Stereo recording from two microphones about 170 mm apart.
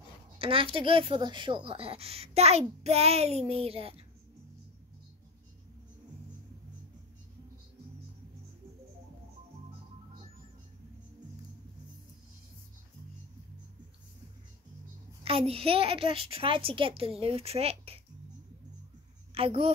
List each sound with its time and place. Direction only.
0.4 s speech: 30° right (ahead or behind)
15.2 s speech: 35° right (ahead or behind)
19.3 s speech: 35° right (ahead or behind)